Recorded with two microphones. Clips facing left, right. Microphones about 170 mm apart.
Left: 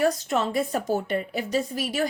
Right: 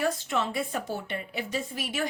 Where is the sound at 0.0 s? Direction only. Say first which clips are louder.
Left 5 dB; 40° left (ahead or behind).